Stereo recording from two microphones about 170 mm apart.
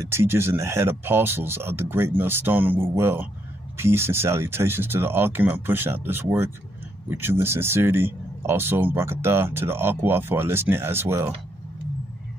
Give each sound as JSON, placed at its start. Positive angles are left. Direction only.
{"t": 0.1, "sound": "speech", "side_deg": -15}